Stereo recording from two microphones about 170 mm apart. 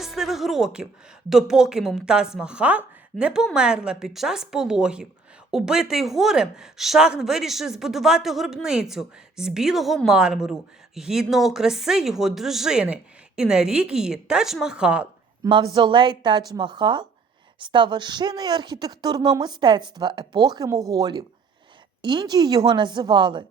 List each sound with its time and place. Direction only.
0.0 s a woman's voice: centre (ahead or behind)
15.4 s speech: 30° right (ahead or behind)